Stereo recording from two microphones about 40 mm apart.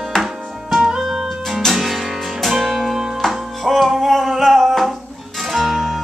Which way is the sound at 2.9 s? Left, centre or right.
Centre.